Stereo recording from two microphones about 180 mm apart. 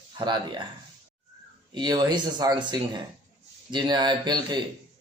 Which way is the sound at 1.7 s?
25° right (ahead or behind).